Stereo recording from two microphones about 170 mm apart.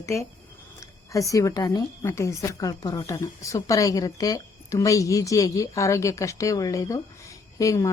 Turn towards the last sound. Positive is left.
turn(degrees=20)  # may be behind; listen again after turning